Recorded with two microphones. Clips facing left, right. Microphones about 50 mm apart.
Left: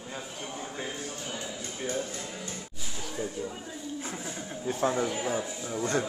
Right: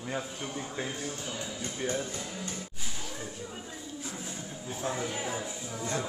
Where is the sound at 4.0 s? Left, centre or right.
Left.